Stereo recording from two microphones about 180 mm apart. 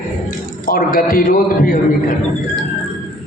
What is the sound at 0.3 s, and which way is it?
A man's voice, 50° left (ahead or behind).